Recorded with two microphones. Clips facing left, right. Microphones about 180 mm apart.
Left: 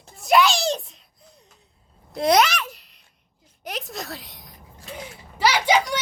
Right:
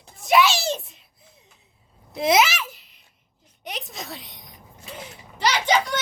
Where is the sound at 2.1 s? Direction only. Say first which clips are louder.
Left 1 dB; centre (ahead or behind).